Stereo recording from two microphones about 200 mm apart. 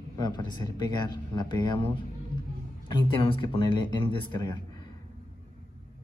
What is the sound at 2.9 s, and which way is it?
A man's voice, 25° left (ahead or behind).